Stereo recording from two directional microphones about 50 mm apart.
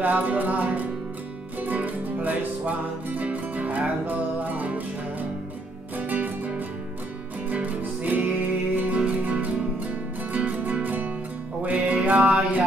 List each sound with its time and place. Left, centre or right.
0.0 s music: right
5.9 s music: right